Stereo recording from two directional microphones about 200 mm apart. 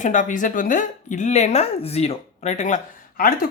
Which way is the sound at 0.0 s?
40° left (ahead or behind).